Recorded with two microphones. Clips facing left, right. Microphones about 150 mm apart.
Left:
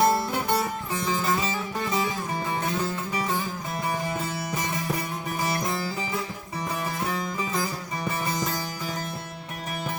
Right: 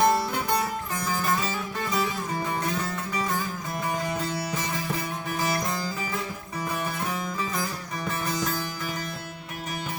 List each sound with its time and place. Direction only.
0.0 s music: 5° left (ahead or behind)
0.9 s music: 25° left (ahead or behind)